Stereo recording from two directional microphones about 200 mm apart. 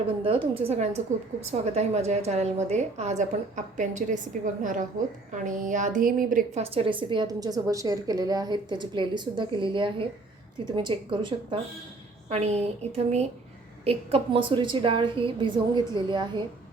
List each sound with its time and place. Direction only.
0.2 s a woman's voice: 25° right (ahead or behind); by 6.6 s 45° right (ahead or behind)
6.6 s a woman's voice: 30° right (ahead or behind)